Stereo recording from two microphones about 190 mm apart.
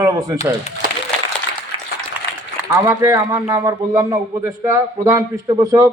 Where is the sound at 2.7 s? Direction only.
15° right (ahead or behind).